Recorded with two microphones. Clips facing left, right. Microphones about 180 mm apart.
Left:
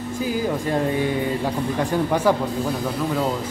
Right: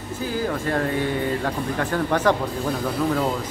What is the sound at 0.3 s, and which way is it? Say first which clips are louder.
Speech: left 1 dB; 15° left (ahead or behind).